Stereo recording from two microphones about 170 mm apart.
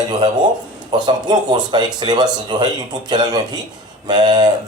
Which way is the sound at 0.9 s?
25° right (ahead or behind).